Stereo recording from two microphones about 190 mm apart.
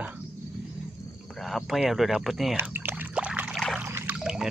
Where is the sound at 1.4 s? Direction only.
Centre (ahead or behind).